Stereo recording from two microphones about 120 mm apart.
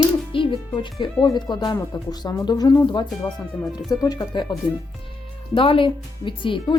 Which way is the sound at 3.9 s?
30° left (ahead or behind).